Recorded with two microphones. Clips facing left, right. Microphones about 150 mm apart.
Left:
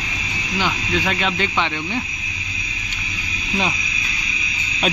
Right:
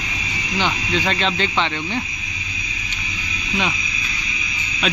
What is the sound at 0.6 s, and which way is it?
Speech, 5° left (ahead or behind).